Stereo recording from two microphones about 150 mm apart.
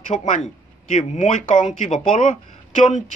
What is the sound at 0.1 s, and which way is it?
Speech, 55° left (ahead or behind).